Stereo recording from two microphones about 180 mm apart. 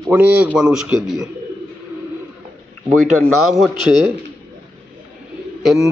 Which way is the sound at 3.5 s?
Centre (ahead or behind).